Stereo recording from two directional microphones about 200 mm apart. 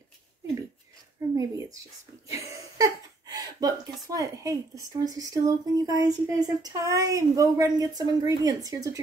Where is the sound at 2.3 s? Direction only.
15° right (ahead or behind).